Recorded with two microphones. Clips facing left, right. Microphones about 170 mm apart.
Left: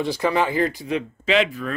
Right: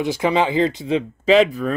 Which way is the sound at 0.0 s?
15° right (ahead or behind).